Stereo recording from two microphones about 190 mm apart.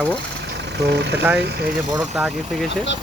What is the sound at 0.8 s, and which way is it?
Speech, 60° right (ahead or behind).